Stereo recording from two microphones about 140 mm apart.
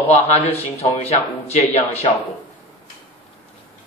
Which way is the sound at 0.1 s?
55° left (ahead or behind).